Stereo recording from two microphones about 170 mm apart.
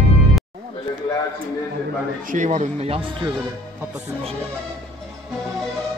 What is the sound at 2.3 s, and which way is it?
Speech, 45° right (ahead or behind).